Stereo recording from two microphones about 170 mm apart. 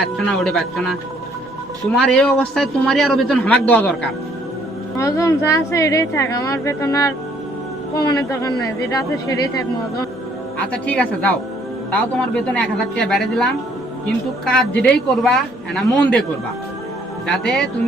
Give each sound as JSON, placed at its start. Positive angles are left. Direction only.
{"t": 0.0, "sound": "a man's voice", "side_deg": 5}
{"t": 2.0, "sound": "a man's voice", "side_deg": 5}
{"t": 10.6, "sound": "a woman's voice", "side_deg": 5}
{"t": 17.2, "sound": "a man's voice", "side_deg": 5}